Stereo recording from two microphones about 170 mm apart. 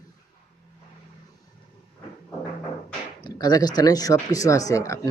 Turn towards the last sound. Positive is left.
turn(degrees=20)  # may be behind; listen again after turning